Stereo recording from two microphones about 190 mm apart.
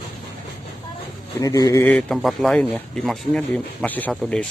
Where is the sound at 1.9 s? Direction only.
Centre (ahead or behind).